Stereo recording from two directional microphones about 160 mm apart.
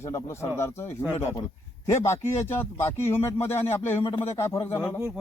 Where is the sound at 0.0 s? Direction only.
15° left (ahead or behind).